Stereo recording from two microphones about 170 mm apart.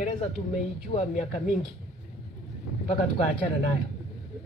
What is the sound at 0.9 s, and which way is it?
Speech, 40° left (ahead or behind).